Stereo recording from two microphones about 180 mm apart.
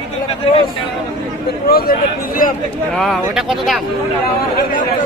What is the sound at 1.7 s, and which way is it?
Speech, 55° left (ahead or behind).